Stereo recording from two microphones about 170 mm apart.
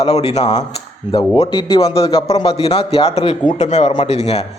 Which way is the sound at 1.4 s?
30° left (ahead or behind).